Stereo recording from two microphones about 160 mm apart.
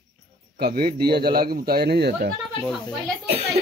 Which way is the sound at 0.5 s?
75° right (ahead or behind).